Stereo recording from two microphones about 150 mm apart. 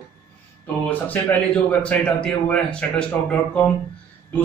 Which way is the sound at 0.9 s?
10° left (ahead or behind).